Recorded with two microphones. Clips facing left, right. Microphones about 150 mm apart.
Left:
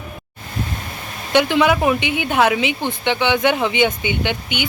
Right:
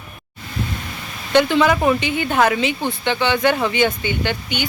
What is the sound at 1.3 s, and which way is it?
Speech, 15° left (ahead or behind).